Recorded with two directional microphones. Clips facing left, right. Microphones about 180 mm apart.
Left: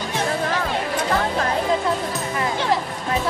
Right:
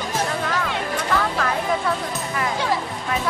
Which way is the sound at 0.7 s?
35° left (ahead or behind).